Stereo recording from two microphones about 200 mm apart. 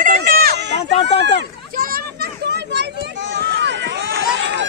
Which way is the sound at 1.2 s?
55° right (ahead or behind).